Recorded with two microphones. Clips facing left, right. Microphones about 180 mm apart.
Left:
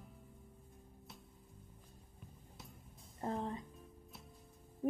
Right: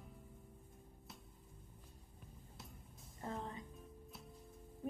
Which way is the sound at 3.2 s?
35° left (ahead or behind).